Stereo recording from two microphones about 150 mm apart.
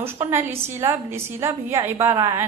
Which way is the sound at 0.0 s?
15° right (ahead or behind).